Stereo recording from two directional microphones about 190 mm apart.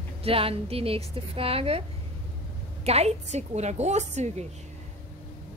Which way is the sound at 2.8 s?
35° right (ahead or behind).